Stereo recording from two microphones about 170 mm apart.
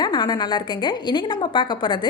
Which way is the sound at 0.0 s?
25° left (ahead or behind).